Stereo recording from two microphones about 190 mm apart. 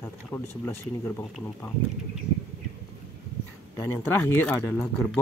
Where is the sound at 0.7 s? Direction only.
15° left (ahead or behind).